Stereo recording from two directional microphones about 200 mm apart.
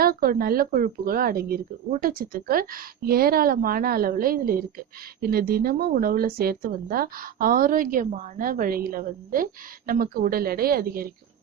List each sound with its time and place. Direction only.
0.0 s speech: 45° right (ahead or behind)